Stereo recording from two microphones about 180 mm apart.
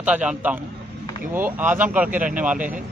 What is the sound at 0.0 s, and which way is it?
Speech, 5° right (ahead or behind).